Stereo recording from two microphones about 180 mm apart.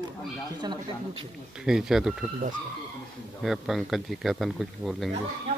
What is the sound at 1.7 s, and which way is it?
Speech, centre (ahead or behind).